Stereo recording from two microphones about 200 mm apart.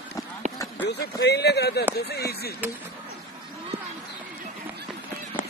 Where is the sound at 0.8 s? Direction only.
55° left (ahead or behind).